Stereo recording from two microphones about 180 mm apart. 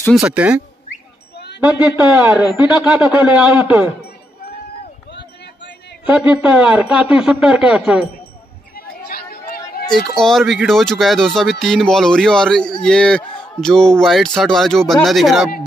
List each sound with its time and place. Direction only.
0.2 s a man's voice: 5° right (ahead or behind)
1.6 s a man's voice: 10° right (ahead or behind)
6.0 s a man's voice: 5° right (ahead or behind)
8.7 s chatter: 55° left (ahead or behind)
9.9 s a man's voice: centre (ahead or behind)